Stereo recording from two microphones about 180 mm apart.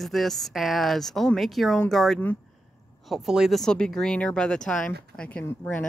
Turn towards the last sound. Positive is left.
turn(degrees=10)  # may be behind; listen again after turning